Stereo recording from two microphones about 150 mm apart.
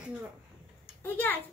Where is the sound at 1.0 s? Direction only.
15° left (ahead or behind).